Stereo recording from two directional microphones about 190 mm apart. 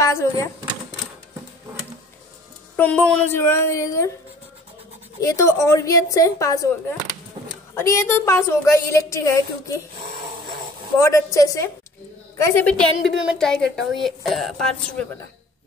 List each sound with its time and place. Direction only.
0.0 s speech: 15° left (ahead or behind)
2.7 s a woman's voice: 10° left (ahead or behind)
5.2 s a woman's voice: 15° left (ahead or behind)
11.0 s a woman's voice: 15° left (ahead or behind)